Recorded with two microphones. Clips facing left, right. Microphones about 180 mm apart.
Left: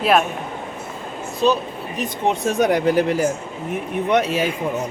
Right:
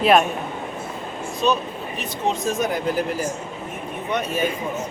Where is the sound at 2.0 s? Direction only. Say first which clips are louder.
Left 4 dB; 60° left (ahead or behind); by 4.4 s 80° left.